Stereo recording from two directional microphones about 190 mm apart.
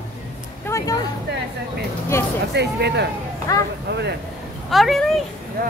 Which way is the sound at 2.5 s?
60° right (ahead or behind).